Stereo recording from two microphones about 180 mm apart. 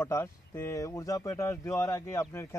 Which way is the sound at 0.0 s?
15° left (ahead or behind).